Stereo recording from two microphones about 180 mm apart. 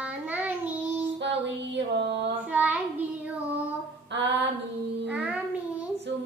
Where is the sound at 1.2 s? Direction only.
75° right (ahead or behind).